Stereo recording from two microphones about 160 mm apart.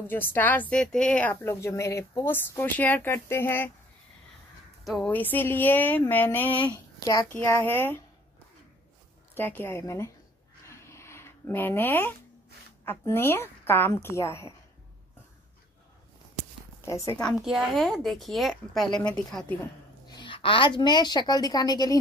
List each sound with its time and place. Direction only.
0.1 s a woman's voice: 10° left (ahead or behind)
4.8 s a woman's voice: centre (ahead or behind)
5.1 s a woman's voice: 10° left (ahead or behind)
6.5 s speech: 30° left (ahead or behind)
7.3 s a woman's voice: 15° left (ahead or behind)
9.3 s a woman's voice: 15° left (ahead or behind)
10.7 s a sound: 15° left (ahead or behind)
12.8 s a woman's voice: 15° left (ahead or behind)
16.8 s a woman's voice: 20° left (ahead or behind)
17.4 s a woman's voice: centre (ahead or behind)
20.1 s a woman's voice: 30° left (ahead or behind)